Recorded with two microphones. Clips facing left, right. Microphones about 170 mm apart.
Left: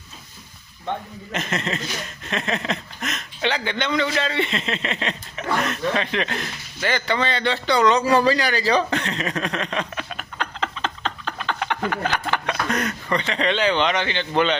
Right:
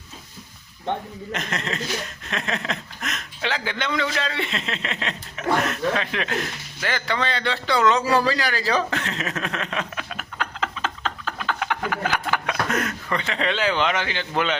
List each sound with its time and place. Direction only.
1.3 s chuckle: centre (ahead or behind)